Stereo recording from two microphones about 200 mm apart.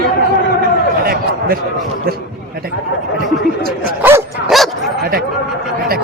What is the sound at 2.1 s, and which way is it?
Speech, 50° right (ahead or behind).